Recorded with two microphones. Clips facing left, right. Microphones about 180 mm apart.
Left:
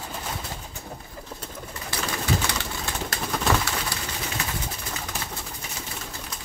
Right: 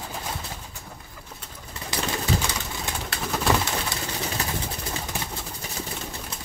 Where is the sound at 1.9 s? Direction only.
20° right (ahead or behind).